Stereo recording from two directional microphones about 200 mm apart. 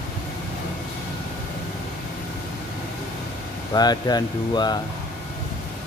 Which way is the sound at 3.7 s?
20° left (ahead or behind).